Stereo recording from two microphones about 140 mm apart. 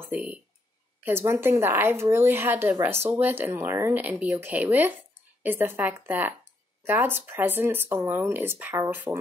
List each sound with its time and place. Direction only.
0.0 s speech: 10° right (ahead or behind)